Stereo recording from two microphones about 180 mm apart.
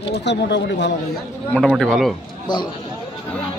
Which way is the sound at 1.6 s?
Centre (ahead or behind).